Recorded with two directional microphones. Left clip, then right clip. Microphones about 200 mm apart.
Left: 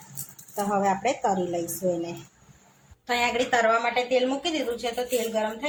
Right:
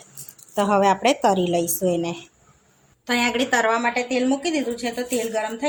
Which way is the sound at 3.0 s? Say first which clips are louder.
Right 3 dB; 40° right (ahead or behind).